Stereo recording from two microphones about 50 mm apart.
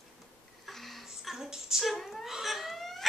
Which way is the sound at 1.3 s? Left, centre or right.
Centre.